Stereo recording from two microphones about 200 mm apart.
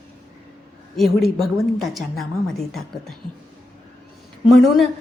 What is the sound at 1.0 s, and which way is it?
A woman's voice, centre (ahead or behind).